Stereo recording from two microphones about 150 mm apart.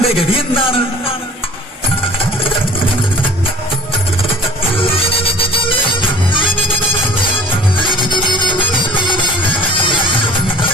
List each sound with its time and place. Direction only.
0.0 s a man's voice: 40° left (ahead or behind)
7.8 s music: 30° left (ahead or behind)